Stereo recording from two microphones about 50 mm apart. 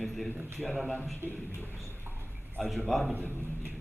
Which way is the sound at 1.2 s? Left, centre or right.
Right.